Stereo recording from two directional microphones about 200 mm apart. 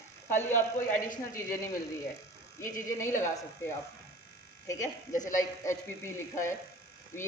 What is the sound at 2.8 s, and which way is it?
Speech, 15° left (ahead or behind).